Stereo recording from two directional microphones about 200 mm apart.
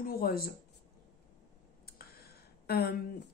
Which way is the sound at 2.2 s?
50° left (ahead or behind).